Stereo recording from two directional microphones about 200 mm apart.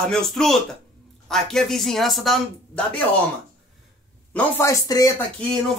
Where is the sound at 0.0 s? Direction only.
5° left (ahead or behind).